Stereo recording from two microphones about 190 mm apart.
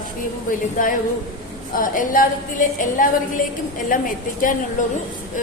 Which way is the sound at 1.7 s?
45° left (ahead or behind).